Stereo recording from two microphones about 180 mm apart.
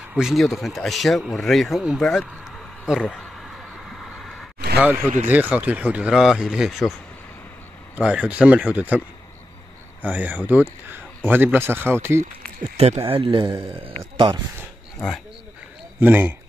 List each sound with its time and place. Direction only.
0.1 s speech: centre (ahead or behind)
4.0 s a sound: centre (ahead or behind)
4.7 s speech: 10° right (ahead or behind)
10.0 s speech: 10° right (ahead or behind)
12.7 s speech: 35° right (ahead or behind)
16.0 s speech: 10° right (ahead or behind)